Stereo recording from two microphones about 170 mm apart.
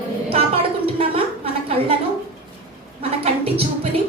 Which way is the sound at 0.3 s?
35° right (ahead or behind).